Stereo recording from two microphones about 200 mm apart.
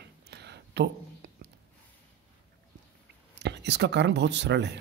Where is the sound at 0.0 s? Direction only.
55° right (ahead or behind).